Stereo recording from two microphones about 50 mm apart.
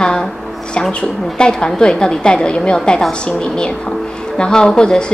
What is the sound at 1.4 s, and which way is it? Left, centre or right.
A woman's voice, centre.